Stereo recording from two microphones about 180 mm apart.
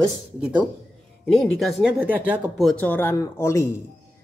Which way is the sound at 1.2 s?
5° left (ahead or behind).